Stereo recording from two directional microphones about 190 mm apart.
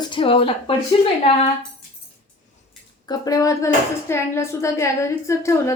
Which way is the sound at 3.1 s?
20° left (ahead or behind).